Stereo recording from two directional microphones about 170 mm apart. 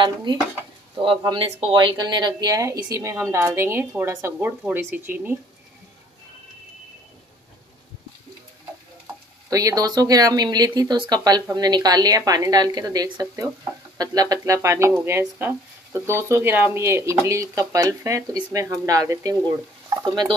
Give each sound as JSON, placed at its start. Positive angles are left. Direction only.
{"t": 0.0, "sound": "speech", "side_deg": -25}
{"t": 9.5, "sound": "speech", "side_deg": -20}